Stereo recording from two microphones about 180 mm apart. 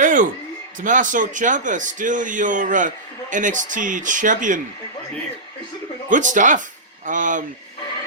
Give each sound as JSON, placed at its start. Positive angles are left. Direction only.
{"t": 0.0, "sound": "a sound", "side_deg": -45}
{"t": 0.8, "sound": "speech", "side_deg": -45}
{"t": 6.1, "sound": "speech", "side_deg": -45}